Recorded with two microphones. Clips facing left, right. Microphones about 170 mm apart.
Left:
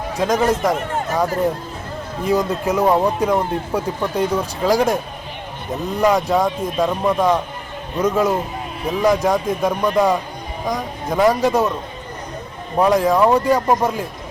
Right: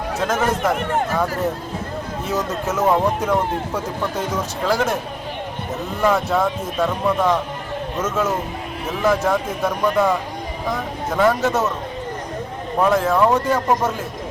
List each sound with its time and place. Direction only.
0.2 s speech: 15° left (ahead or behind)
4.6 s speech: 15° left (ahead or behind)
6.0 s speech: 15° left (ahead or behind)
12.8 s speech: 15° left (ahead or behind)